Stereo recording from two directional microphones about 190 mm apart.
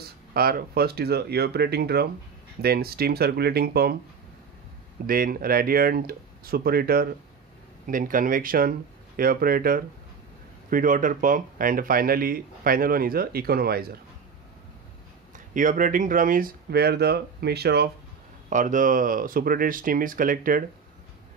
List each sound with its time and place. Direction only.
0.3 s speech: 50° right (ahead or behind)
5.0 s speech: 50° right (ahead or behind)
15.3 s speech: 45° right (ahead or behind); by 17.8 s 60° right (ahead or behind)
18.5 s speech: 40° right (ahead or behind)